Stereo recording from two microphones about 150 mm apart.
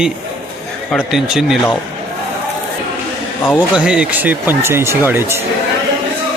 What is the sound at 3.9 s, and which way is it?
Speech, 10° right (ahead or behind).